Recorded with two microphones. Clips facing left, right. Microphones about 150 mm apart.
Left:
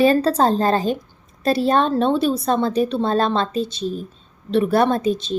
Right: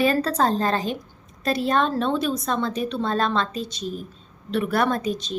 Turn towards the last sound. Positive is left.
turn(degrees=30)  # may be behind; listen again after turning